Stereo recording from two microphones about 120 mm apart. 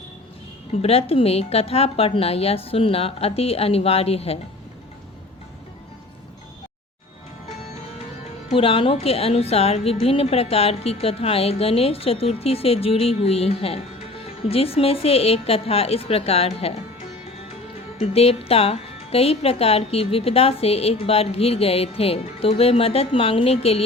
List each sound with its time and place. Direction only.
0.8 s speech: 55° left (ahead or behind)
8.4 s speech: 50° left (ahead or behind)
18.0 s speech: 55° left (ahead or behind)